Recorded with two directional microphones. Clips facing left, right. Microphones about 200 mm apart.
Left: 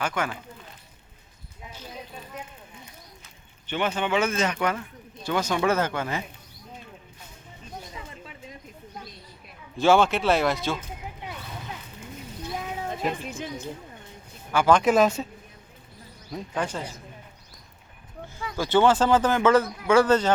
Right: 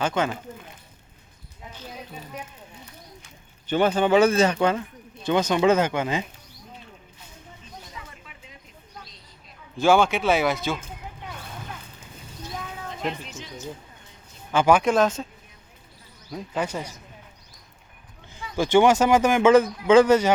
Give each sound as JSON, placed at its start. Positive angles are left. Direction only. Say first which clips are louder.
{"t": 0.0, "sound": "speech", "louder": "right 4 dB", "side_deg": -25}
{"t": 3.7, "sound": "speech", "louder": "right 6 dB", "side_deg": -40}
{"t": 5.2, "sound": "speech", "louder": "right 4 dB", "side_deg": -20}
{"t": 8.2, "sound": "a sound", "louder": "left 6 dB", "side_deg": 35}
{"t": 9.7, "sound": "speech", "louder": "right 1 dB", "side_deg": 0}
{"t": 13.2, "sound": "speech", "louder": "left 5 dB", "side_deg": 55}
{"t": 14.5, "sound": "speech", "louder": "right 2 dB", "side_deg": -20}
{"t": 14.8, "sound": "speech", "louder": "left 1 dB", "side_deg": 10}
{"t": 16.3, "sound": "a man's voice", "louder": "right 1 dB", "side_deg": -10}
{"t": 18.5, "sound": "a man's voice", "louder": "right 3 dB", "side_deg": -15}